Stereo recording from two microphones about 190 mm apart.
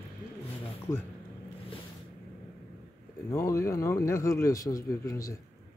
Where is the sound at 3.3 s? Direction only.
15° left (ahead or behind).